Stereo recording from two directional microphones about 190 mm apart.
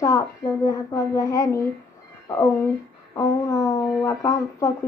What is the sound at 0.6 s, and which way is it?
Speech, 20° left (ahead or behind).